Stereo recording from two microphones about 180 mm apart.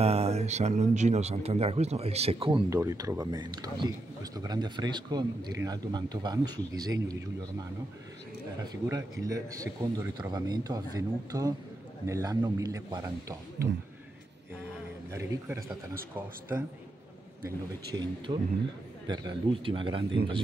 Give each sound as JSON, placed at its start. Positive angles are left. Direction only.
{"t": 0.0, "sound": "speech", "side_deg": -35}
{"t": 2.7, "sound": "a man's voice", "side_deg": -15}
{"t": 8.8, "sound": "a man's voice", "side_deg": -20}
{"t": 15.1, "sound": "a man's voice", "side_deg": -15}
{"t": 17.9, "sound": "a man's voice", "side_deg": -25}